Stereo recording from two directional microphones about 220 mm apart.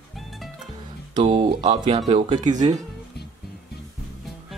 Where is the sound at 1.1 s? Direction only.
30° right (ahead or behind).